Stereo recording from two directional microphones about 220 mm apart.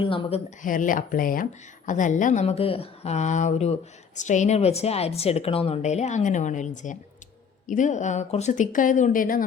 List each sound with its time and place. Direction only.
0.0 s speech: 25° left (ahead or behind); by 9.4 s 40° left (ahead or behind)